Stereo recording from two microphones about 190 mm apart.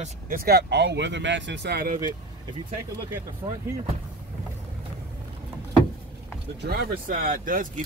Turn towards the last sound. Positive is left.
turn(degrees=-45)  # may be behind; listen again after turning